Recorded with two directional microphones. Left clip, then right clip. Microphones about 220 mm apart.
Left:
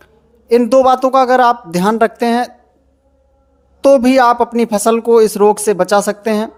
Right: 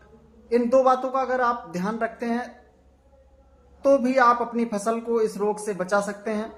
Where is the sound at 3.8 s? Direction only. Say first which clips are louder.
Left 10 dB; 40° left (ahead or behind).